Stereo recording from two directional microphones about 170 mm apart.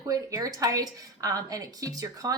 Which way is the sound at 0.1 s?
20° right (ahead or behind).